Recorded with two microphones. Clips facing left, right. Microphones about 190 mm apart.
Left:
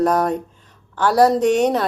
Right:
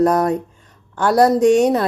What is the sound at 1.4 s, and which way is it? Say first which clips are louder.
Speech: right 3 dB; 10° right (ahead or behind).